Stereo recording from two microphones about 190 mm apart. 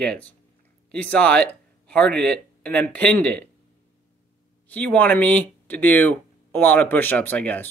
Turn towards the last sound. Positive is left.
turn(degrees=10)  # may be behind; listen again after turning